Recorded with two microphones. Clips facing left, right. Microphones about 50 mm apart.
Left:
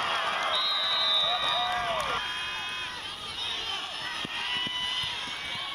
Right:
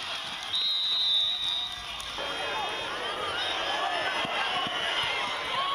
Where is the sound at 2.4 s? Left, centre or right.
Right.